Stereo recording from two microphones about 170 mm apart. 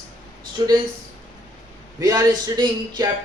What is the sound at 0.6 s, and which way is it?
Speech, 20° right (ahead or behind).